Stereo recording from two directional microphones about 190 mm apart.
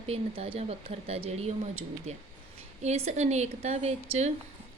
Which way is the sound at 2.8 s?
35° right (ahead or behind).